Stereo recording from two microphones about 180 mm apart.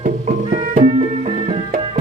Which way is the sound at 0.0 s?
45° right (ahead or behind).